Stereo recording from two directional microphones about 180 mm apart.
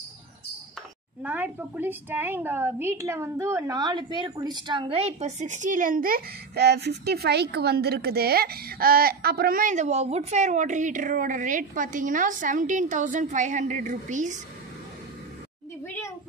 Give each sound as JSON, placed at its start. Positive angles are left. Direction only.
{"t": 1.2, "sound": "a woman's voice", "side_deg": -10}